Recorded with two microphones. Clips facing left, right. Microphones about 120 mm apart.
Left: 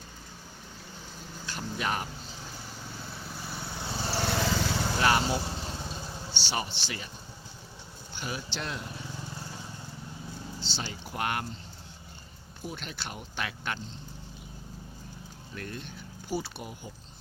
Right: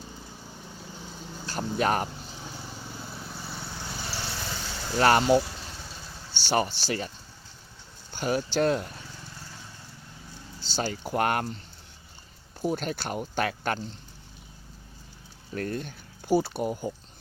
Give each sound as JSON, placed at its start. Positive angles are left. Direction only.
{"t": 1.5, "sound": "speech", "side_deg": -40}
{"t": 3.1, "sound": "vehicle", "side_deg": 0}
{"t": 3.7, "sound": "vehicle", "side_deg": 20}
{"t": 4.3, "sound": "vehicle", "side_deg": 90}
{"t": 4.9, "sound": "speech", "side_deg": -50}
{"t": 5.4, "sound": "vehicle", "side_deg": 25}
{"t": 6.4, "sound": "speech", "side_deg": -45}
{"t": 8.1, "sound": "speech", "side_deg": -45}
{"t": 9.4, "sound": "vehicle", "side_deg": 15}
{"t": 10.6, "sound": "speech", "side_deg": -45}
{"t": 12.6, "sound": "speech", "side_deg": -45}
{"t": 15.5, "sound": "speech", "side_deg": -45}